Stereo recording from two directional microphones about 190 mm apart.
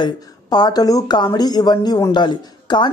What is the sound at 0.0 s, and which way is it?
Speech, 20° left (ahead or behind).